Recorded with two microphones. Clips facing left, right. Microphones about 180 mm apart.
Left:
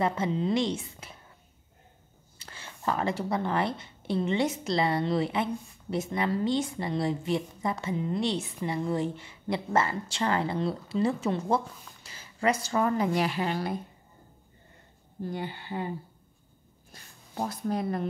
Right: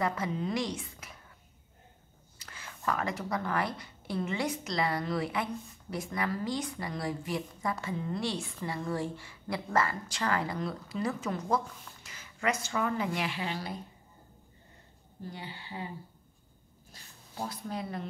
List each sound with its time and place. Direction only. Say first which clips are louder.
0.0 s a woman's voice: left 4 dB; 25° left (ahead or behind)
2.3 s a woman's voice: left 2 dB; 30° left (ahead or behind); by 13.7 s 50° left (ahead or behind)
15.2 s a woman's voice: left 8 dB; 50° left (ahead or behind)
16.9 s speech: left 6 dB; 50° left (ahead or behind)